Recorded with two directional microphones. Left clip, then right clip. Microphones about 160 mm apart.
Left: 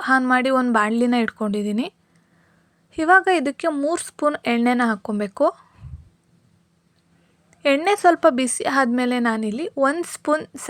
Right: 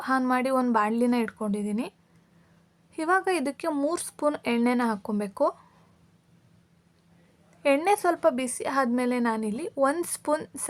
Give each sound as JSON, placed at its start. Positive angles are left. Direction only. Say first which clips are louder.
{"t": 0.3, "sound": "speech", "louder": "left 6 dB", "side_deg": 20}
{"t": 2.9, "sound": "speech", "louder": "left 9 dB", "side_deg": 20}
{"t": 7.5, "sound": "a sound", "louder": "left 4 dB", "side_deg": 20}
{"t": 7.9, "sound": "speech", "louder": "left 7 dB", "side_deg": 20}